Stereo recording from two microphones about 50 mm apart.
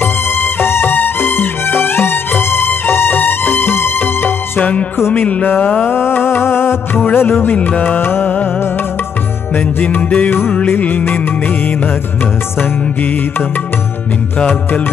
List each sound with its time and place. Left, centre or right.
0.0 s music: left
4.6 s music: left
4.9 s music: left
5.2 s music: left
5.9 s music: left
7.5 s music: left
9.6 s music: left
10.3 s music: left
10.8 s music: left